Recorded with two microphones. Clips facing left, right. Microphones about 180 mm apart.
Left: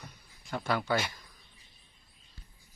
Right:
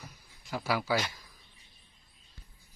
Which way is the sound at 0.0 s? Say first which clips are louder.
Even; centre (ahead or behind).